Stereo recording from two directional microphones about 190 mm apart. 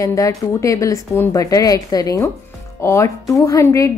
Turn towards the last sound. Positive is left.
turn(degrees=15)  # may be behind; listen again after turning